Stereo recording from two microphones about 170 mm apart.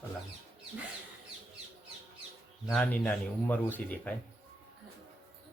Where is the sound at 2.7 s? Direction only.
5° left (ahead or behind).